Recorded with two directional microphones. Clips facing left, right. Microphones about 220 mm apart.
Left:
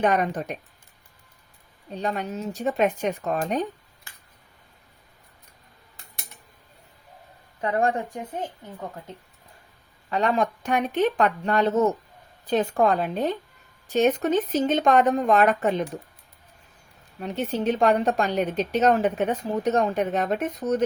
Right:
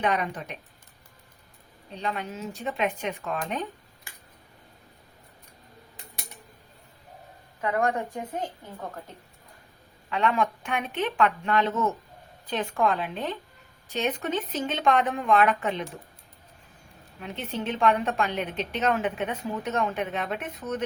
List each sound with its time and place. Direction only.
0.0 s speech: 45° left (ahead or behind)
1.9 s speech: 45° left (ahead or behind)
7.6 s a woman's voice: 30° left (ahead or behind)
10.1 s a woman's voice: 40° left (ahead or behind)
17.2 s a woman's voice: 40° left (ahead or behind)